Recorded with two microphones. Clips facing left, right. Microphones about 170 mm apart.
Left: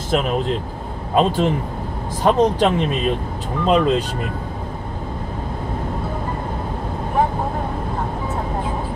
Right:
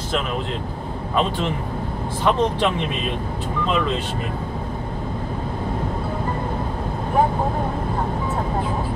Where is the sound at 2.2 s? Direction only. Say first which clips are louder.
Left 4 dB; 40° left (ahead or behind).